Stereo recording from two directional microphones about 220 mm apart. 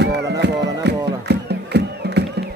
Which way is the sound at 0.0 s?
50° right (ahead or behind).